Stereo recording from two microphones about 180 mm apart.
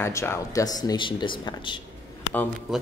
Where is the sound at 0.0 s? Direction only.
15° left (ahead or behind).